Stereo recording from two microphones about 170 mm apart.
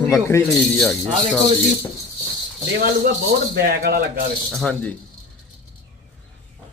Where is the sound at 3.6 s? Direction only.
65° right (ahead or behind).